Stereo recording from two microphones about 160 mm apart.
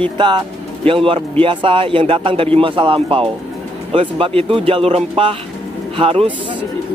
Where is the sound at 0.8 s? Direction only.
35° right (ahead or behind).